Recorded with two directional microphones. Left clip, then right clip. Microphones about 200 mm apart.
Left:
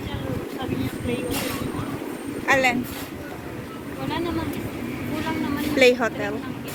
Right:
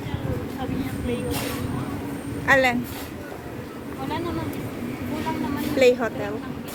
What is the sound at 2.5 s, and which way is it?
Speech, 20° right (ahead or behind).